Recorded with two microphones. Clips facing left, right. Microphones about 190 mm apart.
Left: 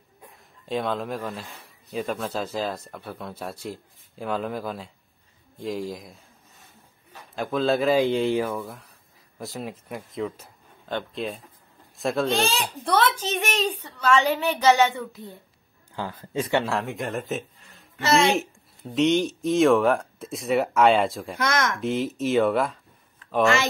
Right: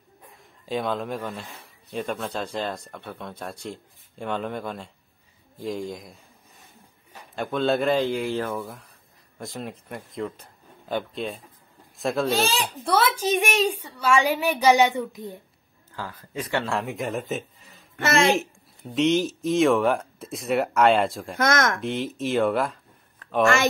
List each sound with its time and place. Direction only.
0.3 s speech: centre (ahead or behind)
7.3 s speech: centre (ahead or behind)
8.1 s speech: 25° left (ahead or behind)
8.5 s speech: centre (ahead or behind); by 15.3 s 15° right (ahead or behind)
16.0 s speech: 25° left (ahead or behind)
16.6 s speech: centre (ahead or behind)
21.4 s speech: 45° right (ahead or behind)
21.7 s speech: centre (ahead or behind)
23.4 s speech: 50° right (ahead or behind)